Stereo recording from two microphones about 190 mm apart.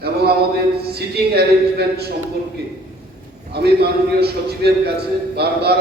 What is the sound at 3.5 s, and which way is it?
Speech, 60° right (ahead or behind).